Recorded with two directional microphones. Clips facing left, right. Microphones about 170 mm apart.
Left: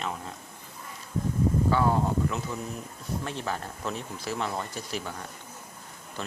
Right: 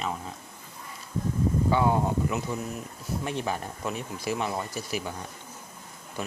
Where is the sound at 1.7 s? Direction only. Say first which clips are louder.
Right 1 dB; 15° right (ahead or behind).